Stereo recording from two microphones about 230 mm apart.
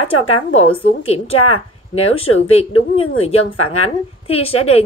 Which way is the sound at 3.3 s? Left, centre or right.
Left.